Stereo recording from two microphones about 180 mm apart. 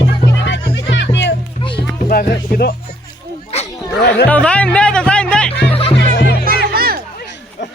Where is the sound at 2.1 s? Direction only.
55° left (ahead or behind).